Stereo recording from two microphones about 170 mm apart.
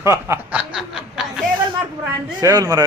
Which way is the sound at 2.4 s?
20° right (ahead or behind).